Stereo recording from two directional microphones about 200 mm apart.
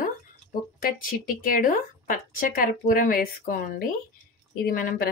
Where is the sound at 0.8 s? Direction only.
45° left (ahead or behind).